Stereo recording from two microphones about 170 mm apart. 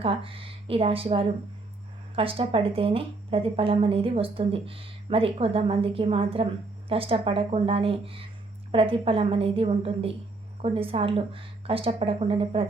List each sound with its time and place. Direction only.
0.0 s a woman's voice: 30° right (ahead or behind)